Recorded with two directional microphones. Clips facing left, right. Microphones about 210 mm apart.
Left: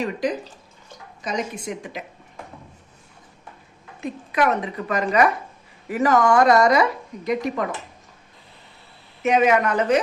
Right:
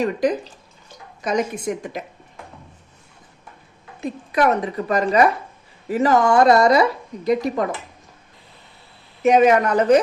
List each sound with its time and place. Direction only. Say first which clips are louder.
1.2 s a woman's voice: right 5 dB; 55° right (ahead or behind)
4.0 s speech: right 3 dB; 35° right (ahead or behind)
9.2 s speech: right 4 dB; 40° right (ahead or behind)